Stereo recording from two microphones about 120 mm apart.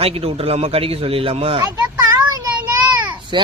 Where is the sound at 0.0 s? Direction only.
55° right (ahead or behind).